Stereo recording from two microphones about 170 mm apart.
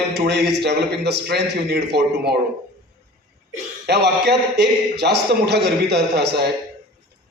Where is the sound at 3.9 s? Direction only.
80° right.